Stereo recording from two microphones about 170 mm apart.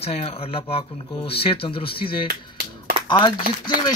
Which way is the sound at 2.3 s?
70° right (ahead or behind).